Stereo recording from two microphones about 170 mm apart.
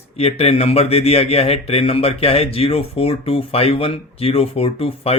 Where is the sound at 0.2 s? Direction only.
35° left (ahead or behind).